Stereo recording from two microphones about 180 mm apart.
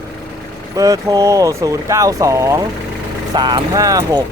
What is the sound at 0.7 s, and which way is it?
Speech, 20° right (ahead or behind).